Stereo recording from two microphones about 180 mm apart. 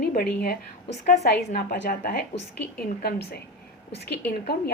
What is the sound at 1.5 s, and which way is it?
Speech, 50° left (ahead or behind).